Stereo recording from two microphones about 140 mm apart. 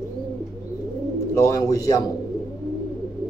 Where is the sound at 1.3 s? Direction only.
25° left (ahead or behind).